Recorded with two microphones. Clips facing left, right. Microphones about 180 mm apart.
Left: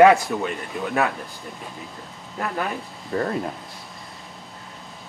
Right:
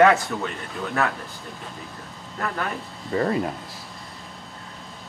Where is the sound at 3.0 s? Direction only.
Centre (ahead or behind).